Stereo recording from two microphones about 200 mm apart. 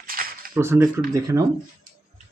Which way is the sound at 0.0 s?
45° right (ahead or behind).